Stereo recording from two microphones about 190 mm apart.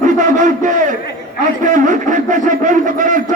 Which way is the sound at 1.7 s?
40° right (ahead or behind).